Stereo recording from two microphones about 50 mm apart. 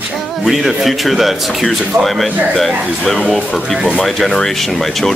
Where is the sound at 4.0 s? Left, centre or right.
Centre.